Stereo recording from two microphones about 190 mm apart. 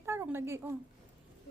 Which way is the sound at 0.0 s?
15° right (ahead or behind).